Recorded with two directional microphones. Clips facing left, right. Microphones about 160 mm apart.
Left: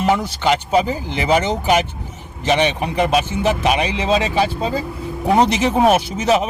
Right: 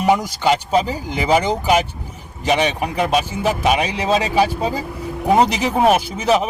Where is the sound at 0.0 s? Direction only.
10° right (ahead or behind).